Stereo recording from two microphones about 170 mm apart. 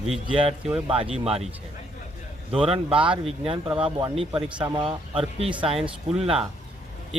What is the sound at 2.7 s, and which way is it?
Speech, 30° right (ahead or behind).